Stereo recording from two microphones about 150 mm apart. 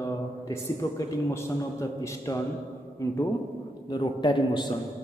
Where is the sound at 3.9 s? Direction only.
30° left (ahead or behind).